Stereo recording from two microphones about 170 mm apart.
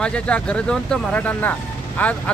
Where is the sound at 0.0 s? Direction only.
5° left (ahead or behind).